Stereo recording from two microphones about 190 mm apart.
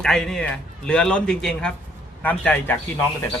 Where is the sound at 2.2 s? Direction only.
10° left (ahead or behind).